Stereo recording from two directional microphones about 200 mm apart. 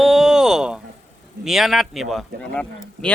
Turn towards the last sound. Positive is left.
turn(degrees=5)  # may be behind; listen again after turning